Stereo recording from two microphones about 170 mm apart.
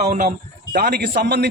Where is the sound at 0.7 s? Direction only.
65° right (ahead or behind).